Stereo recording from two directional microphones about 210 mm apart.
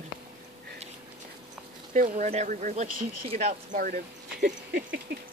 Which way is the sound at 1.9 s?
40° right (ahead or behind).